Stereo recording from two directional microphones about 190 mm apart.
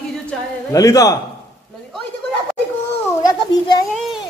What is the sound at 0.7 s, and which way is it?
Speech, 20° left (ahead or behind).